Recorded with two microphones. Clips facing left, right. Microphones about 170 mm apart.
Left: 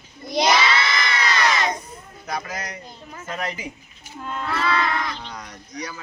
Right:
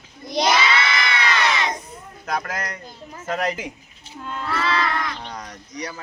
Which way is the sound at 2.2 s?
60° right (ahead or behind).